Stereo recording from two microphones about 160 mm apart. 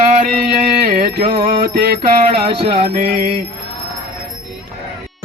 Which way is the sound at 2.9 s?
65° right (ahead or behind).